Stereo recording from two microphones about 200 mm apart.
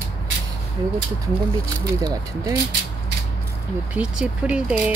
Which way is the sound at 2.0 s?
20° right (ahead or behind).